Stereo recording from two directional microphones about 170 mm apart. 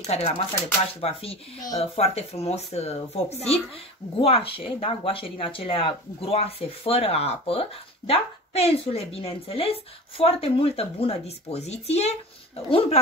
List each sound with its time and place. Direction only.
0.0 s speech: 40° left (ahead or behind)